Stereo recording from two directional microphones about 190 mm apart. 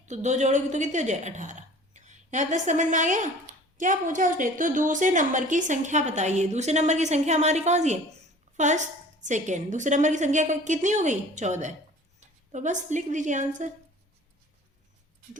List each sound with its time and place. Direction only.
0.0 s a woman's voice: 40° right (ahead or behind)